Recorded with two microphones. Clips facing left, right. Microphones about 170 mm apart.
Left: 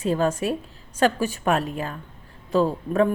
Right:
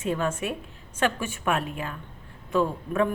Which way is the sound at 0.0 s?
35° left (ahead or behind).